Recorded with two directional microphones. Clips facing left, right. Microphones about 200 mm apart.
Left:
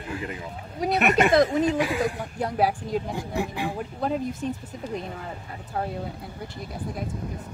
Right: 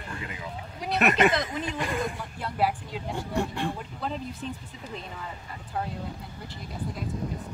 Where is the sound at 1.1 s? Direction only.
45° left (ahead or behind).